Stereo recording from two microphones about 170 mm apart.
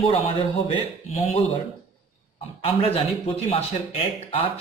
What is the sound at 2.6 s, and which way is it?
Speech, 35° left (ahead or behind).